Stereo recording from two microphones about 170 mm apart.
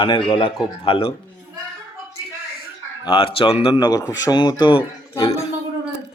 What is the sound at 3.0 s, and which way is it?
Speech, 30° left (ahead or behind).